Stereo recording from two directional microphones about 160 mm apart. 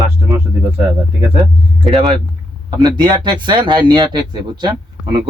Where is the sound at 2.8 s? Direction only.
25° right (ahead or behind).